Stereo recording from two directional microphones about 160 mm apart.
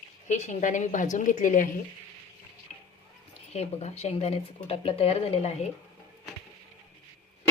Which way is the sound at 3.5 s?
40° left (ahead or behind).